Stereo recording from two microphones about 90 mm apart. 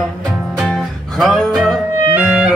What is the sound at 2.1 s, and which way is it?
Music, 10° right (ahead or behind).